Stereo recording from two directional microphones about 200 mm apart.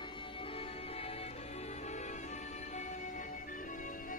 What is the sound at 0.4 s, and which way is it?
Music, 25° left (ahead or behind).